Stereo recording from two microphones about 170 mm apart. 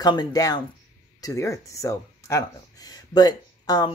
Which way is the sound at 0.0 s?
25° left (ahead or behind).